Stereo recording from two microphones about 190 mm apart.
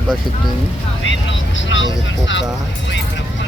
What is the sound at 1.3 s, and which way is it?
Speech, 80° left.